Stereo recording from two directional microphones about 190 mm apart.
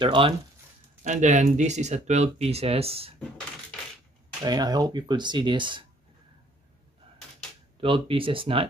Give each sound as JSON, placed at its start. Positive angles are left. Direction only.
{"t": 0.0, "sound": "speech", "side_deg": -25}
{"t": 1.0, "sound": "speech", "side_deg": -40}
{"t": 4.4, "sound": "speech", "side_deg": -20}
{"t": 7.8, "sound": "speech", "side_deg": -25}